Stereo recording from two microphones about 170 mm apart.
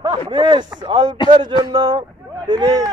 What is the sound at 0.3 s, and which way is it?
Speech, 30° right (ahead or behind).